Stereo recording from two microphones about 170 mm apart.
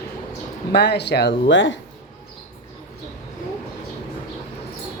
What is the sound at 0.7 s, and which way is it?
Speech, 80° left.